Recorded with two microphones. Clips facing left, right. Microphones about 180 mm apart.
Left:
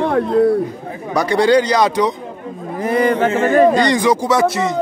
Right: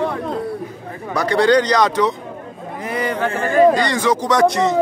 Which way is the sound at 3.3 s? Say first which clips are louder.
Right 2 dB; 20° left (ahead or behind).